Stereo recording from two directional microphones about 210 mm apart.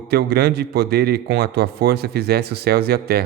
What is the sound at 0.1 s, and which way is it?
Speech, 50° right (ahead or behind).